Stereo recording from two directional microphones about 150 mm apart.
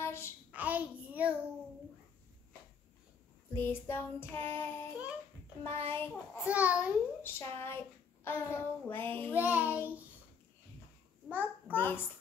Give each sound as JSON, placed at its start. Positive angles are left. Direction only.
{"t": 0.0, "sound": "child singing", "side_deg": 15}
{"t": 0.5, "sound": "a sound", "side_deg": -10}
{"t": 3.5, "sound": "child singing", "side_deg": 15}
{"t": 6.4, "sound": "child singing", "side_deg": -10}
{"t": 7.3, "sound": "child singing", "side_deg": 15}
{"t": 9.3, "sound": "child singing", "side_deg": -10}
{"t": 11.2, "sound": "babbling", "side_deg": -15}
{"t": 11.7, "sound": "child singing", "side_deg": 15}